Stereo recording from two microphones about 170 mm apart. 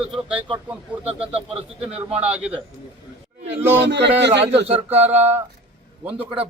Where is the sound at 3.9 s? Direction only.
90° right.